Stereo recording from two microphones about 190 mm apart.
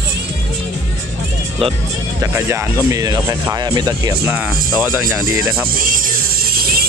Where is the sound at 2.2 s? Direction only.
15° right (ahead or behind).